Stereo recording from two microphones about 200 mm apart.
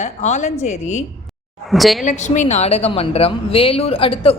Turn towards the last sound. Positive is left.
turn(degrees=30)  # may be behind; listen again after turning